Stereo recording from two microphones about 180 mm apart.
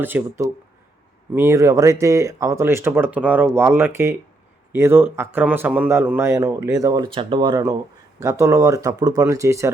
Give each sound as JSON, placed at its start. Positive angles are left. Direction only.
{"t": 0.0, "sound": "speech", "side_deg": -15}